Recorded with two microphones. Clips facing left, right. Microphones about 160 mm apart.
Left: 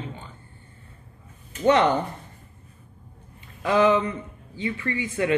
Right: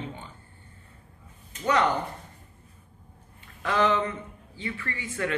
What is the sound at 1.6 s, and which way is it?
Speech, 25° left (ahead or behind).